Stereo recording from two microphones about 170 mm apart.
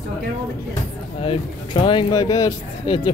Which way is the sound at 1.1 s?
30° left (ahead or behind).